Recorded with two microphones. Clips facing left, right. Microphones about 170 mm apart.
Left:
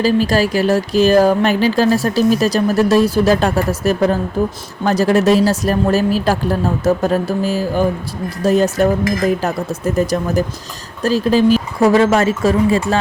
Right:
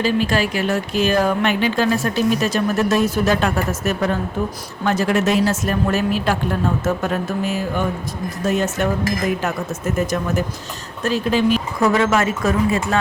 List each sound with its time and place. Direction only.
0.0 s speech: 35° left (ahead or behind)